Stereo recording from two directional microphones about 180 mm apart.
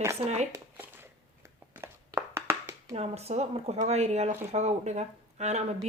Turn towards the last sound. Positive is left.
turn(degrees=-40)  # may be behind; listen again after turning